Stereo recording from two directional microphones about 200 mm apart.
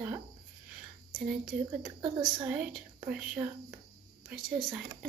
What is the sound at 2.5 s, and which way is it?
A woman's voice, 5° right (ahead or behind).